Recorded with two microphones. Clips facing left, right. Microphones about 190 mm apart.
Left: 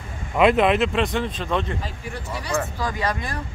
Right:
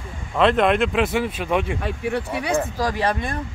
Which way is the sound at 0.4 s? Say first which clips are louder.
Even; 5° left (ahead or behind).